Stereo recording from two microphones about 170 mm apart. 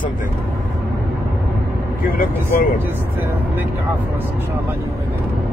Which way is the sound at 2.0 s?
60° left (ahead or behind).